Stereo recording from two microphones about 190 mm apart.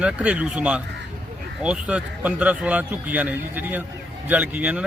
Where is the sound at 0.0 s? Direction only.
5° right (ahead or behind).